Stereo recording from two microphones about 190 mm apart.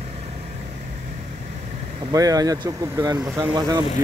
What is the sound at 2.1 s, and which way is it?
Speech, 20° right (ahead or behind).